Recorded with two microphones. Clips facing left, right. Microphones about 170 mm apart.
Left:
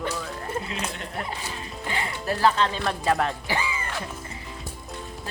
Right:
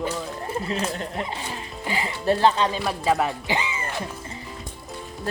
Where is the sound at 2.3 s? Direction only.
25° right (ahead or behind).